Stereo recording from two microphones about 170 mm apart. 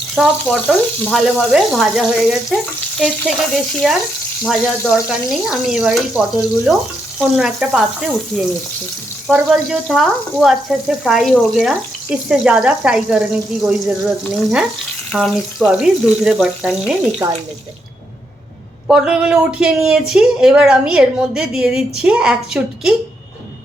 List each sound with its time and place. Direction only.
0.2 s speech: centre (ahead or behind)
9.2 s speech: 5° right (ahead or behind)
15.1 s speech: centre (ahead or behind)
18.9 s speech: 5° right (ahead or behind)